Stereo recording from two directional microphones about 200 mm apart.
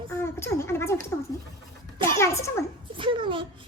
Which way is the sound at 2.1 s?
15° left (ahead or behind).